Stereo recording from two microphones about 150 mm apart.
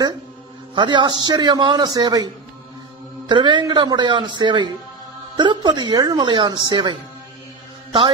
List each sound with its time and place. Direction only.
0.7 s a man's voice: 30° right (ahead or behind)